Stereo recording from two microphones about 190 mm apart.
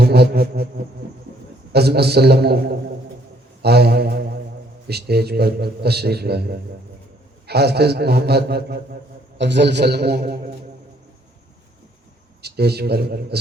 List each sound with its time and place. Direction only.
0.0 s music: 55° right (ahead or behind)
1.7 s a man's voice: 60° right (ahead or behind)
3.6 s a sound: 60° right (ahead or behind)
4.9 s a man's voice: 60° right (ahead or behind)
12.4 s a man's voice: 60° right (ahead or behind)